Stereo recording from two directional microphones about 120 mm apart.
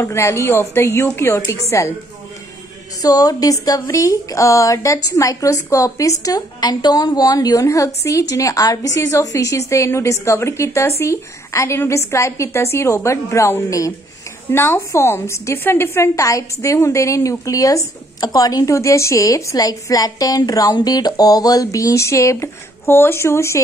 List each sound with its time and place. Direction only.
0.0 s a woman's voice: 25° left (ahead or behind)
3.0 s a woman's voice: 30° left (ahead or behind)